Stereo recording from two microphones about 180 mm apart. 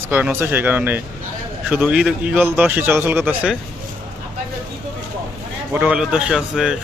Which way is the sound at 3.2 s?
Centre (ahead or behind).